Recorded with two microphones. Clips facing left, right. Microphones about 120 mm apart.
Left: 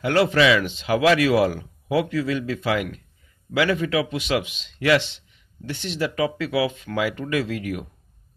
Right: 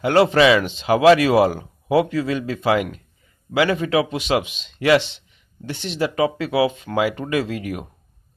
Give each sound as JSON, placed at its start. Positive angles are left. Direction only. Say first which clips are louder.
{"t": 0.0, "sound": "speech", "louder": "right 4 dB", "side_deg": -30}